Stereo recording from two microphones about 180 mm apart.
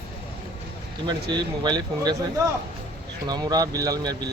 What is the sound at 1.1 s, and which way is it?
Speech, 25° right (ahead or behind).